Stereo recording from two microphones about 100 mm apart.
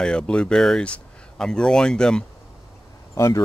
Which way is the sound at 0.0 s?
10° left (ahead or behind).